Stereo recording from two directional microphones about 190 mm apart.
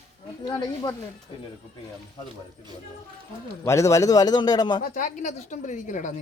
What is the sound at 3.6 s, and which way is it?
A man's voice, 15° left (ahead or behind).